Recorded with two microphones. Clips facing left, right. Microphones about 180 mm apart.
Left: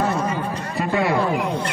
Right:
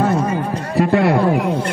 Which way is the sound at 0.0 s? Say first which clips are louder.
Right 5 dB; 50° right (ahead or behind).